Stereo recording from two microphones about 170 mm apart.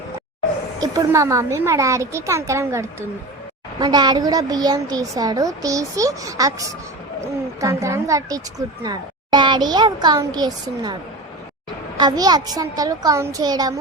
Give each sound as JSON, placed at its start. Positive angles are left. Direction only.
{"t": 0.8, "sound": "a woman's voice", "side_deg": -20}
{"t": 11.9, "sound": "a woman's voice", "side_deg": -25}